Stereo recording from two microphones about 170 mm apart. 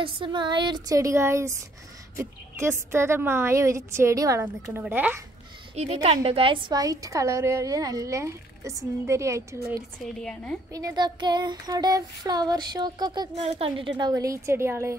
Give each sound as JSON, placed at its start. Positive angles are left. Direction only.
{"t": 0.0, "sound": "a woman's voice", "side_deg": -30}
{"t": 5.8, "sound": "a woman's voice", "side_deg": -40}
{"t": 10.2, "sound": "a woman's voice", "side_deg": 5}
{"t": 10.7, "sound": "a woman's voice", "side_deg": -20}
{"t": 13.4, "sound": "a woman's voice", "side_deg": -35}